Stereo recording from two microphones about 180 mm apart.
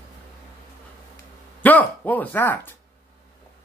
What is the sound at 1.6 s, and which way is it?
Speech, 10° left (ahead or behind).